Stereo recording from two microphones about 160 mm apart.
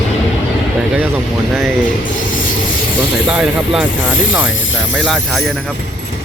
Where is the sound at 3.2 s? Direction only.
5° right (ahead or behind).